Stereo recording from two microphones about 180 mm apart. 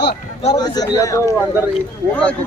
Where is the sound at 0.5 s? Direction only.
20° left (ahead or behind).